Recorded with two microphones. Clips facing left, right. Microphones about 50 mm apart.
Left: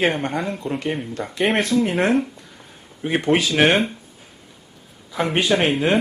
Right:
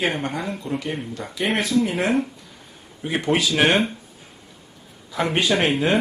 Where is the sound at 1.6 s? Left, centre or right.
Left.